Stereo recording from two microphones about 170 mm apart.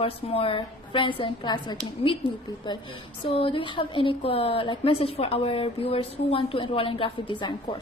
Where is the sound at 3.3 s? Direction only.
35° left (ahead or behind).